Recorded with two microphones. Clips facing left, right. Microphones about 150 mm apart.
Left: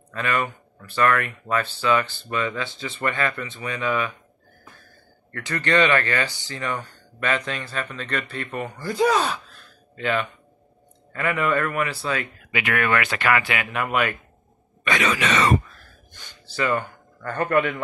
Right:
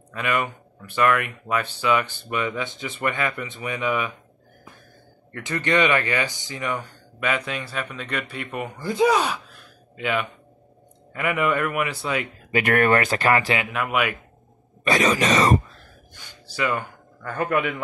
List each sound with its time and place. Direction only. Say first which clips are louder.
0.1 s speech: even; 15° right (ahead or behind)
5.3 s speech: even; 20° right (ahead or behind)
12.4 s speech: right 5 dB; 45° right (ahead or behind)
13.7 s speech: even; 5° right (ahead or behind)
14.9 s speech: right 3 dB; 40° right (ahead or behind)
16.1 s a man's voice: left 1 dB; 10° right (ahead or behind)